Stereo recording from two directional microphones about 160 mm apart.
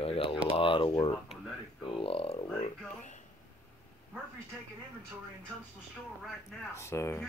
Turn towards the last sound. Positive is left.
turn(degrees=15)  # may be behind; listen again after turning